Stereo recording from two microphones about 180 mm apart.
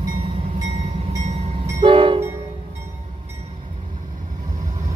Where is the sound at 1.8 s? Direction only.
30° right (ahead or behind).